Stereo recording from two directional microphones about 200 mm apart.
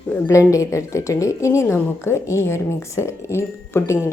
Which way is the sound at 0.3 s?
15° left (ahead or behind).